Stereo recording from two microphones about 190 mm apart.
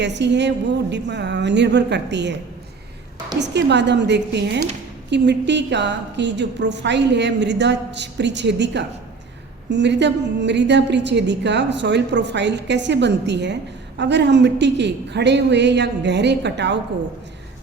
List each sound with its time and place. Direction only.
0.0 s a woman's voice: 65° right (ahead or behind)
3.3 s a woman's voice: 65° right (ahead or behind)